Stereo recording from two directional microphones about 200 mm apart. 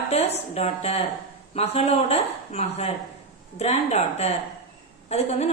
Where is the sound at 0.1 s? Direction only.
30° left (ahead or behind).